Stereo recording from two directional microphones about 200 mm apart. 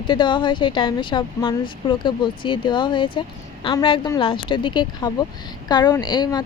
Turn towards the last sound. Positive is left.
turn(degrees=20)  # may be behind; listen again after turning